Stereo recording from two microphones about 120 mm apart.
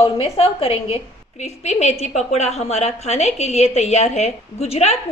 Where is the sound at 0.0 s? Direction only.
55° left (ahead or behind).